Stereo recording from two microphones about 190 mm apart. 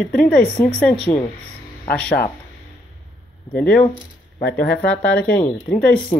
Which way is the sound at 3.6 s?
5° left (ahead or behind).